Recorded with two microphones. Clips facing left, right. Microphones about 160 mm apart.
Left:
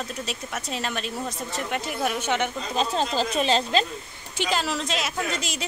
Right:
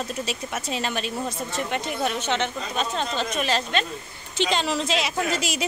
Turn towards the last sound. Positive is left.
turn(degrees=-5)  # may be behind; listen again after turning